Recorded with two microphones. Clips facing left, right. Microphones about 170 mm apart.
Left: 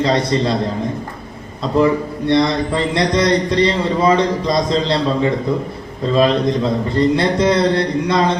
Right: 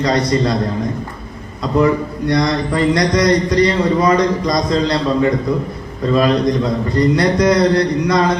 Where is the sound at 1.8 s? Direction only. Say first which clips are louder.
Even; 30° left (ahead or behind).